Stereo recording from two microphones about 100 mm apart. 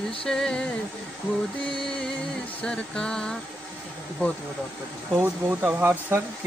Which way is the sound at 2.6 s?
10° left (ahead or behind).